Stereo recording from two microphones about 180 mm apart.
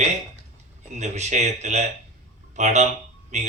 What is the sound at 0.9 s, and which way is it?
A man's voice, 40° right (ahead or behind).